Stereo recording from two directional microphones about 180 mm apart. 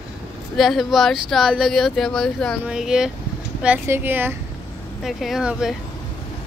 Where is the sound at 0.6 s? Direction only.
Centre (ahead or behind).